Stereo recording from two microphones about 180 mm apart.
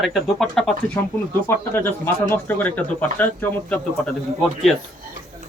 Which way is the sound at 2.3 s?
10° left (ahead or behind).